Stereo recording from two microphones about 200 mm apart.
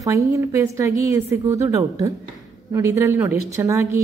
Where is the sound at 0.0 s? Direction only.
15° right (ahead or behind).